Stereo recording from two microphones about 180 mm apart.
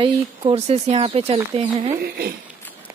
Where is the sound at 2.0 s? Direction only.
60° right (ahead or behind).